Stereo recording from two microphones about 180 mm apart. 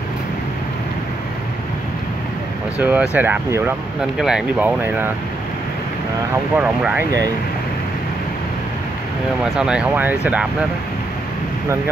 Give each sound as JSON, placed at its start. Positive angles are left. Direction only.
{"t": 2.8, "sound": "speech", "side_deg": -10}
{"t": 6.5, "sound": "speech", "side_deg": -10}
{"t": 7.1, "sound": "speech", "side_deg": -20}
{"t": 9.4, "sound": "speech", "side_deg": -5}